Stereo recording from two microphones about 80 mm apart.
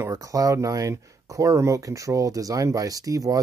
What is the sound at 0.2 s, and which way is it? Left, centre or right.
Speech, right.